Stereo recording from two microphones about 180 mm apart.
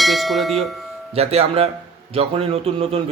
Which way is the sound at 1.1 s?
35° right (ahead or behind).